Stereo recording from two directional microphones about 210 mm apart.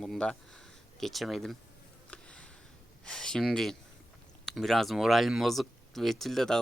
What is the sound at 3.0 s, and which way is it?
Speech, 5° left (ahead or behind).